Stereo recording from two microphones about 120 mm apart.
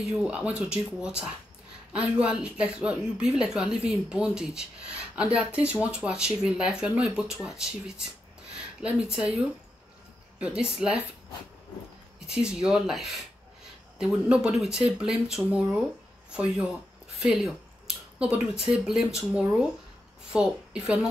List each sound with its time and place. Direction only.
0.0 s speech: 5° right (ahead or behind)
10.4 s speech: 10° right (ahead or behind)
12.3 s speech: 5° right (ahead or behind)
17.2 s a sound: centre (ahead or behind)
18.7 s speech: 5° right (ahead or behind)
20.3 s speech: 10° right (ahead or behind)